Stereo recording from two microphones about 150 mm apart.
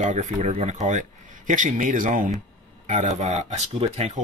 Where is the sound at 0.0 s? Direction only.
55° right (ahead or behind).